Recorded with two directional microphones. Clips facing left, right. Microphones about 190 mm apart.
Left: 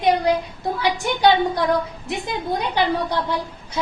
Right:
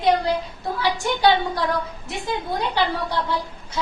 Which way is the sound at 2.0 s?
15° left (ahead or behind).